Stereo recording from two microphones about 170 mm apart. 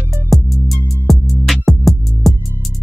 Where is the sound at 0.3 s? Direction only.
Centre (ahead or behind).